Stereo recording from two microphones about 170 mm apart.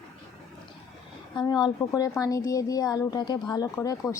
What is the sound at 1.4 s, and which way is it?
A woman's voice, 25° left (ahead or behind).